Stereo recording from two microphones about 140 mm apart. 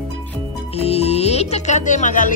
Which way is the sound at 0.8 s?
45° left (ahead or behind).